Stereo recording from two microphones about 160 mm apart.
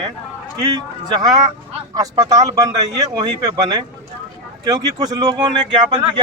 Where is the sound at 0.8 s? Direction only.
25° right (ahead or behind).